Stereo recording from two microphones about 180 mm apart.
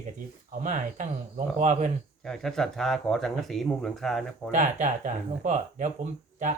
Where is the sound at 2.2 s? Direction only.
5° left (ahead or behind).